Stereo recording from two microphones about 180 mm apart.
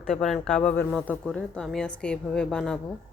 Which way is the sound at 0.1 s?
Centre (ahead or behind).